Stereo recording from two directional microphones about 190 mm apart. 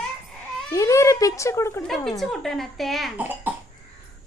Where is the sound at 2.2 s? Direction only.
Centre (ahead or behind).